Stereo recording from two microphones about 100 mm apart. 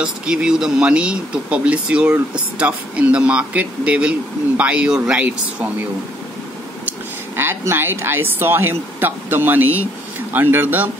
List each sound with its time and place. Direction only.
0.0 s speech: 10° right (ahead or behind)
6.9 s speech: 25° right (ahead or behind)